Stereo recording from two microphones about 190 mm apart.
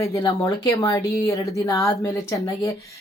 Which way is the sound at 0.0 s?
20° left (ahead or behind).